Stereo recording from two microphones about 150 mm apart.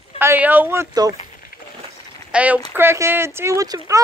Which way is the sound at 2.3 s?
10° right (ahead or behind).